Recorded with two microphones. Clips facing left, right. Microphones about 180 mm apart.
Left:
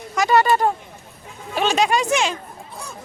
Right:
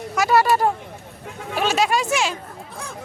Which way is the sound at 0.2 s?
5° right (ahead or behind).